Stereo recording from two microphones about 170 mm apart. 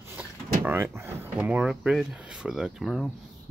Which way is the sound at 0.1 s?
10° right (ahead or behind).